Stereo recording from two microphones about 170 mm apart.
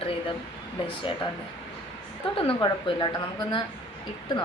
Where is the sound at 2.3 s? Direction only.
30° left (ahead or behind).